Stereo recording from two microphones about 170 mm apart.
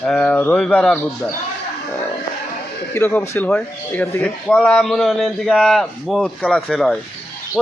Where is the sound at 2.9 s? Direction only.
15° left (ahead or behind).